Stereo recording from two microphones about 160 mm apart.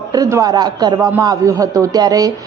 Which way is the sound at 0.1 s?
20° right (ahead or behind).